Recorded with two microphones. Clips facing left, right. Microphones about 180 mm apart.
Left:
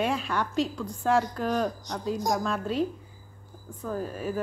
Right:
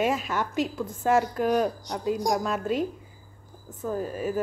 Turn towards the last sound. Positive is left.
turn(degrees=0)  # may be behind; listen again after turning